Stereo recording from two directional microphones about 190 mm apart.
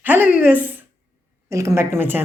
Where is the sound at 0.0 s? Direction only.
10° right (ahead or behind).